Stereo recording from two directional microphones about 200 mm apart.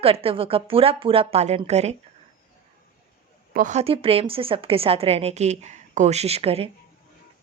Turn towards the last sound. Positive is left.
turn(degrees=-30)  # may be behind; listen again after turning